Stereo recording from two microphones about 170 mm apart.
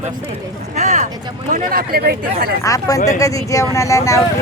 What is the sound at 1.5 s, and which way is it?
Speech, 60° right (ahead or behind).